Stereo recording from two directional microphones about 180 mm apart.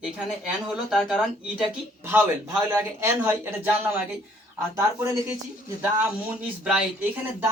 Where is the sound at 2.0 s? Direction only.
10° right (ahead or behind).